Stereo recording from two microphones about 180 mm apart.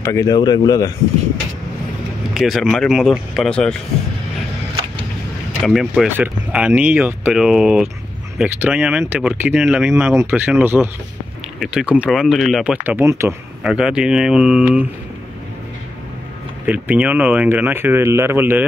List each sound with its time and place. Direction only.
0.0 s speech: 15° left (ahead or behind)
2.3 s speech: centre (ahead or behind)
5.6 s speech: centre (ahead or behind)
16.6 s speech: 10° right (ahead or behind)